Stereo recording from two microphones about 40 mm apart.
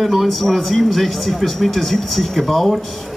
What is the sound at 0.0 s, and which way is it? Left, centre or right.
A man's voice, centre.